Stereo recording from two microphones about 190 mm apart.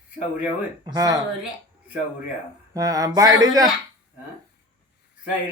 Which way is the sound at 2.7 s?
20° right (ahead or behind).